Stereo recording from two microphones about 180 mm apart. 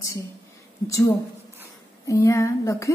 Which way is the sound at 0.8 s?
20° left (ahead or behind).